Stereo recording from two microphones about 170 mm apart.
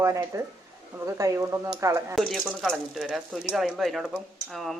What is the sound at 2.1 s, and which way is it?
Speech, centre (ahead or behind).